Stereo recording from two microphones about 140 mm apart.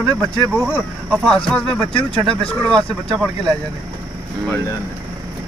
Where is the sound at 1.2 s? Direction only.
5° left (ahead or behind).